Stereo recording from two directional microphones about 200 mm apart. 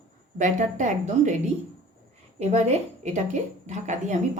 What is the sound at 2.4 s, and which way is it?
A woman's voice, 35° right (ahead or behind).